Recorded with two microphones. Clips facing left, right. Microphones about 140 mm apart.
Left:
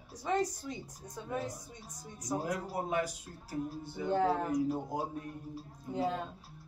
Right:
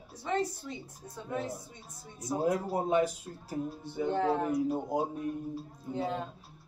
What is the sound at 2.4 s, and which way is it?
Speech, 25° right (ahead or behind).